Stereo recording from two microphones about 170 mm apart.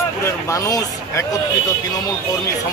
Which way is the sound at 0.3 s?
15° left (ahead or behind).